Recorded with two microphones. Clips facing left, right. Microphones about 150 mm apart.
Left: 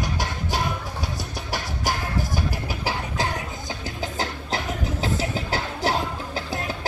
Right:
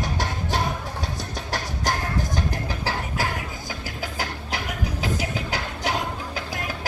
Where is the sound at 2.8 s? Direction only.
20° left (ahead or behind).